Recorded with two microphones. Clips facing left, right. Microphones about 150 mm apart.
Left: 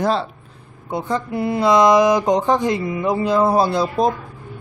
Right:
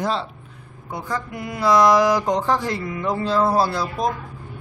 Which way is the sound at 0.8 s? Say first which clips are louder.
Left 5 dB; 25° left (ahead or behind).